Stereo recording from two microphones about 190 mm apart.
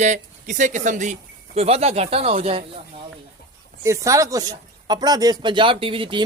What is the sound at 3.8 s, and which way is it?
Speech, 15° right (ahead or behind).